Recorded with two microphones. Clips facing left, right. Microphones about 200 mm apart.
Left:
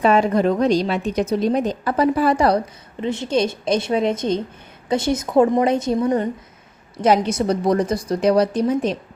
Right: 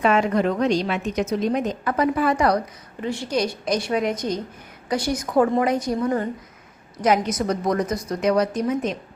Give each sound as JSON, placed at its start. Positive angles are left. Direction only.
{"t": 0.0, "sound": "a woman's voice", "side_deg": 35}
{"t": 3.0, "sound": "a woman's voice", "side_deg": 20}